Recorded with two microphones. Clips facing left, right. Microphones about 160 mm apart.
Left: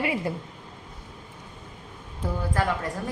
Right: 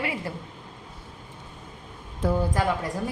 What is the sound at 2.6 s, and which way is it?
Speech, 15° right (ahead or behind).